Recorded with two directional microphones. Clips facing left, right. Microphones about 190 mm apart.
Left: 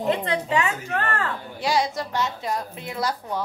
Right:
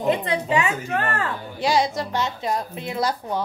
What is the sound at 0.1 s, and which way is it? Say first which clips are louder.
A woman's voice: right 2 dB; 15° right (ahead or behind).